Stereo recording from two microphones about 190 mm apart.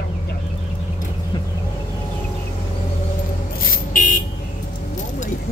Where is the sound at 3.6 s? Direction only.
45° left (ahead or behind).